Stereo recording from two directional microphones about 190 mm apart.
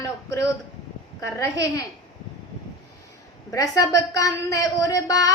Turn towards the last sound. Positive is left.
turn(degrees=20)  # may be behind; listen again after turning